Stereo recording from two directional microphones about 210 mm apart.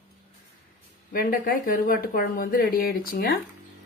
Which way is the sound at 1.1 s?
45° left (ahead or behind).